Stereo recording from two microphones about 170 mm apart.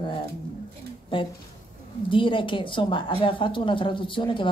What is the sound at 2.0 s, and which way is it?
A woman's voice, 30° left (ahead or behind).